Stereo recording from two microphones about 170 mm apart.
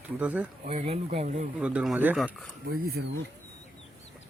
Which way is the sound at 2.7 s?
65° right (ahead or behind).